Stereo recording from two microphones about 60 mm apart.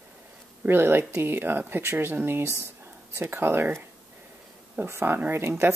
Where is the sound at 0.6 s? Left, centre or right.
Right.